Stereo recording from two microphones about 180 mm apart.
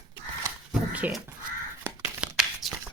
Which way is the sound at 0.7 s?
5° right (ahead or behind).